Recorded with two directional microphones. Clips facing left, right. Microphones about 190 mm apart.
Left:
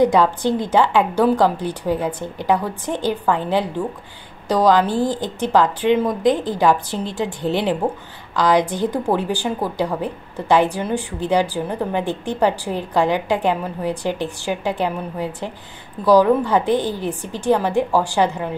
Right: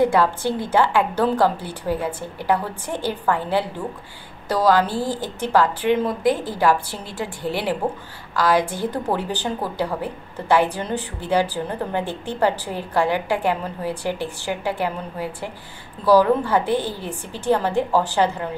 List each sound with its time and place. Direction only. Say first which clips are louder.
0.0 s a woman's voice: left 3 dB; 15° left (ahead or behind)